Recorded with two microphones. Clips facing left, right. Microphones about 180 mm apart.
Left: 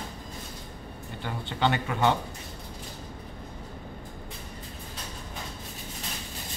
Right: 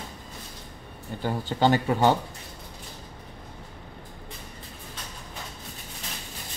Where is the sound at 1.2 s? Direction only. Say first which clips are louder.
Right 5 dB; 40° right (ahead or behind).